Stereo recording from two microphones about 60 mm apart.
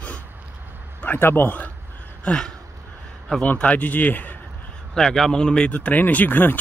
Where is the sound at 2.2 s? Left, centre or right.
Centre.